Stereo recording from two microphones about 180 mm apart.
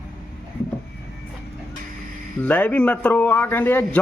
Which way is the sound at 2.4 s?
10° left (ahead or behind).